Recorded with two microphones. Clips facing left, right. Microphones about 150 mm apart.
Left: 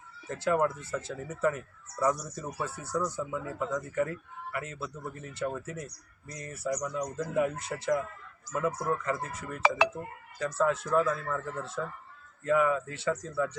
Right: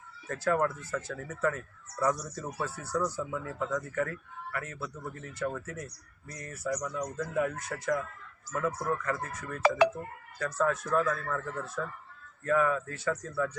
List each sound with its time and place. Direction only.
0.3 s a man's voice: 15° left (ahead or behind)
10.0 s a man's voice: 10° left (ahead or behind)